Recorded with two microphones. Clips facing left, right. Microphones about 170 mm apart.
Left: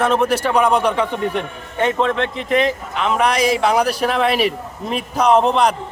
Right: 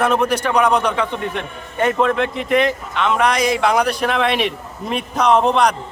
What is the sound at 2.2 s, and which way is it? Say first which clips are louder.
Speech: right 1 dB; centre (ahead or behind).